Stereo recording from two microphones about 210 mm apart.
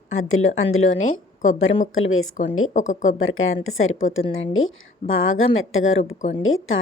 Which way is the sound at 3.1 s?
70° left (ahead or behind).